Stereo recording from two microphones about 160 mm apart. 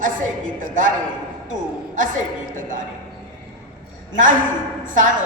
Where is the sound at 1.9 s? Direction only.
55° right (ahead or behind).